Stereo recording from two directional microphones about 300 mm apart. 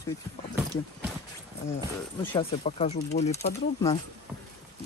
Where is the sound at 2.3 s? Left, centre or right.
Centre.